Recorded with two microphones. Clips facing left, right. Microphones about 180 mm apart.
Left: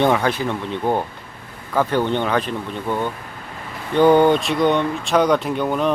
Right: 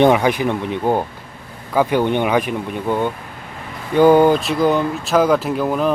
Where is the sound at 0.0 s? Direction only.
15° right (ahead or behind).